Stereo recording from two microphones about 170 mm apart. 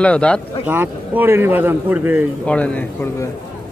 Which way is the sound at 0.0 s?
5° left (ahead or behind).